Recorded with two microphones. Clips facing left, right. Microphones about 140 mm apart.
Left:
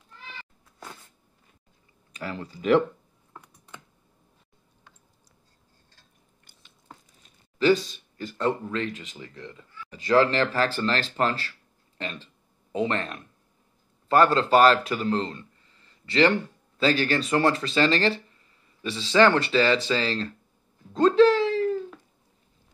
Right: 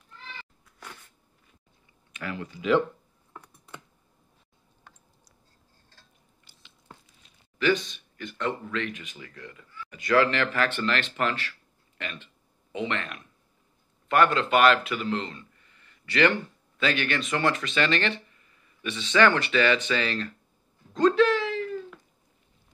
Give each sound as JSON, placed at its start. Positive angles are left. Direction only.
{"t": 0.7, "sound": "sneeze", "side_deg": 25}
{"t": 2.1, "sound": "speech", "side_deg": 35}
{"t": 7.5, "sound": "speech", "side_deg": 35}
{"t": 9.9, "sound": "speech", "side_deg": 35}
{"t": 20.9, "sound": "a sound", "side_deg": 30}